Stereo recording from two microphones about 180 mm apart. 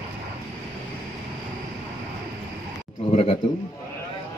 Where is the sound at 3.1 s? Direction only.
35° left (ahead or behind).